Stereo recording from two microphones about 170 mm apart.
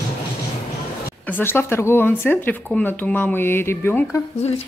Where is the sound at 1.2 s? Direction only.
10° left (ahead or behind).